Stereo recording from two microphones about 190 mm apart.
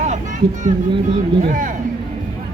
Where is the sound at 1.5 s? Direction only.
45° right (ahead or behind).